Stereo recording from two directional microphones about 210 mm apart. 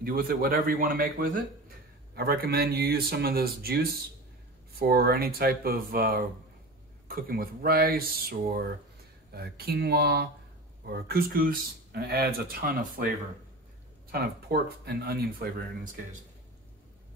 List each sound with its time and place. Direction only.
0.0 s speech: 45° right (ahead or behind)
14.1 s speech: 50° right (ahead or behind)